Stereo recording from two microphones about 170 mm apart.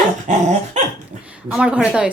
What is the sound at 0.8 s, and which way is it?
Dog, 45° right (ahead or behind).